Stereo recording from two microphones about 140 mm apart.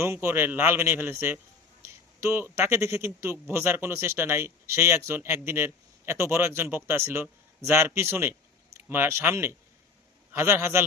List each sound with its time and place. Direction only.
0.0 s a man's voice: 20° right (ahead or behind)